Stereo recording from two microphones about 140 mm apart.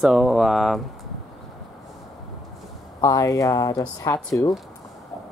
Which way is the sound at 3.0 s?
25° left (ahead or behind).